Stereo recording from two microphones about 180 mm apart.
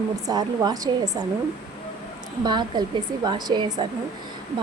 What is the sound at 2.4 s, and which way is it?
Speech, 25° right (ahead or behind).